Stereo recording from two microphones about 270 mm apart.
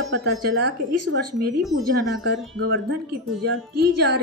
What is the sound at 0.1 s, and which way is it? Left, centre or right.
Speech, right.